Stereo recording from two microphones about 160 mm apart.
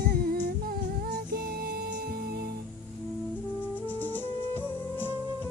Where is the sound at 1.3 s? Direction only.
70° right (ahead or behind).